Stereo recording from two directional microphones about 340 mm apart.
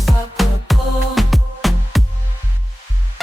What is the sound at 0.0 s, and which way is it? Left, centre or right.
Music, centre.